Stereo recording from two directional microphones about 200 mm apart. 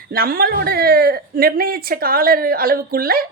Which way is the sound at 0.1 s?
50° right (ahead or behind).